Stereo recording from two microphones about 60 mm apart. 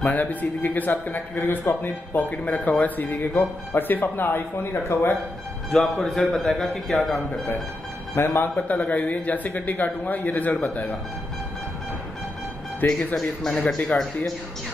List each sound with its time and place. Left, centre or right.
0.0 s speech: left
1.1 s speech: left
4.9 s a man's voice: left
5.7 s speech: centre
8.1 s a man's voice: left
8.6 s speech: left
12.8 s speech: centre